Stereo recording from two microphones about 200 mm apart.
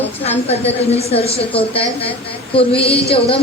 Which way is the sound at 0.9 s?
30° left (ahead or behind).